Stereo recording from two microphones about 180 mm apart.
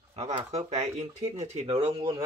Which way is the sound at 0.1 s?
35° right (ahead or behind).